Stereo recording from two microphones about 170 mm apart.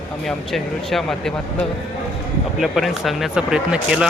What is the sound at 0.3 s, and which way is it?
Speech, centre (ahead or behind).